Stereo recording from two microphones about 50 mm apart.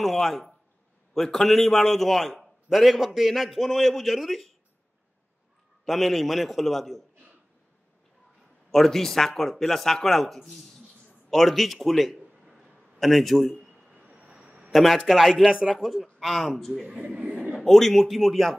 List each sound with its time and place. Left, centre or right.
0.0 s a man's voice: centre
5.9 s a man's voice: centre
8.7 s a man's voice: centre
12.4 s a sound: centre
13.0 s a man's voice: centre
13.7 s a sound: centre
14.1 s a sound: right
14.7 s a man's voice: centre
17.0 s speech: right
17.6 s a man's voice: centre